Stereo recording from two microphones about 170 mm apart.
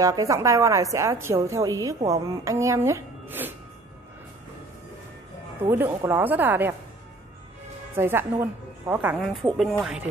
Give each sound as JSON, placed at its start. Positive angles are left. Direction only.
{"t": 0.0, "sound": "a woman's voice", "side_deg": -20}
{"t": 5.6, "sound": "a woman's voice", "side_deg": -10}
{"t": 7.9, "sound": "a woman's voice", "side_deg": -15}